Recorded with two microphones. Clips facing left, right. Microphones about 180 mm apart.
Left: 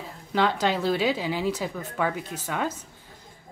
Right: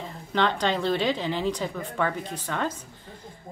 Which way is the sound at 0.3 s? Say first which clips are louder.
Left 1 dB; 5° left (ahead or behind).